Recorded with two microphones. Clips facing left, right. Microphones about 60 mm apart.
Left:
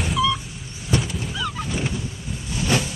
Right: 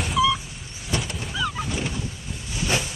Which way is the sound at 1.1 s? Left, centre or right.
Centre.